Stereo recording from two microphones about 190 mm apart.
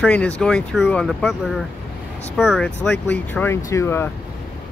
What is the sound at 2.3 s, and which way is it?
Speech, centre (ahead or behind).